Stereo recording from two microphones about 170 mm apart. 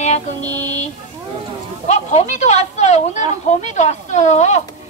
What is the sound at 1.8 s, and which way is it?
Speech, 40° left (ahead or behind).